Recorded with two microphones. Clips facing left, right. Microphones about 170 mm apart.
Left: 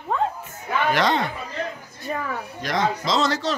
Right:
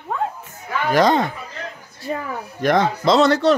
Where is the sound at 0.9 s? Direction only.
45° right (ahead or behind).